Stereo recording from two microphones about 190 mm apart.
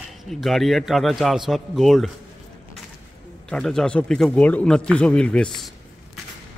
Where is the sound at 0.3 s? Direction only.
Centre (ahead or behind).